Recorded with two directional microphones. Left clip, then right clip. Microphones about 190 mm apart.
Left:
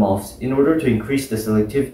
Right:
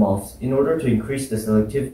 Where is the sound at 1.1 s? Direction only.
15° left (ahead or behind).